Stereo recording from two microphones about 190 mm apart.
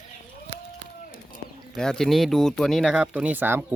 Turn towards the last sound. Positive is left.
turn(degrees=-10)  # may be behind; listen again after turning